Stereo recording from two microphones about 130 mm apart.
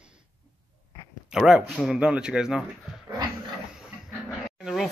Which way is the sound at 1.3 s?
5° right (ahead or behind).